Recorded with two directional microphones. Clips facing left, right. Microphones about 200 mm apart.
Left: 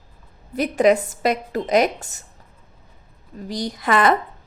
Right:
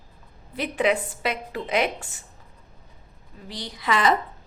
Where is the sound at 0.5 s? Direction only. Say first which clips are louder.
Left 7 dB; 45° left (ahead or behind).